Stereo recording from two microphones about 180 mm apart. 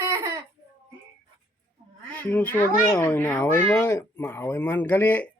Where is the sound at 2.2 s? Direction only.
10° left (ahead or behind).